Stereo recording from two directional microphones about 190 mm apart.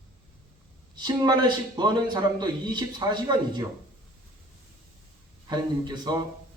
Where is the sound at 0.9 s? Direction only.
20° right (ahead or behind).